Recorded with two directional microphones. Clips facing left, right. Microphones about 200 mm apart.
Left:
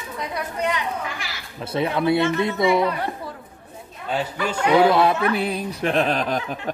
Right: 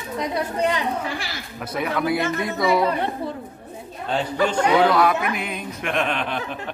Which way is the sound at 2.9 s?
25° right (ahead or behind).